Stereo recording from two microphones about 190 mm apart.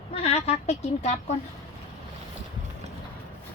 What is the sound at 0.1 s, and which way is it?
Speech, 30° left (ahead or behind).